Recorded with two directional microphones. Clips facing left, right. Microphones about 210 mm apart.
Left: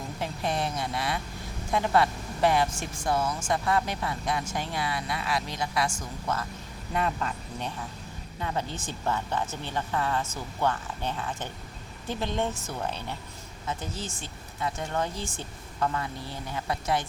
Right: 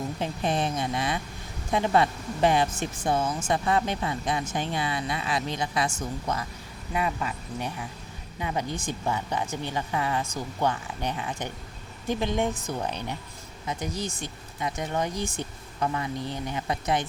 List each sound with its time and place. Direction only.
0.2 s a sound: 20° right (ahead or behind)
1.7 s speech: 20° right (ahead or behind)
6.9 s speech: 5° right (ahead or behind)